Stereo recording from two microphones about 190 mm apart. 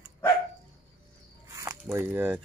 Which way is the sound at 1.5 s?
15° right (ahead or behind).